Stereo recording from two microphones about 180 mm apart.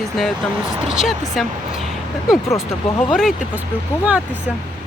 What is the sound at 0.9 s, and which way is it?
Speech, centre (ahead or behind).